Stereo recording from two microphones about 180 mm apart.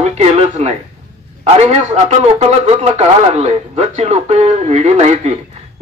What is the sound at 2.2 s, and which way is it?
Speech, 40° right (ahead or behind).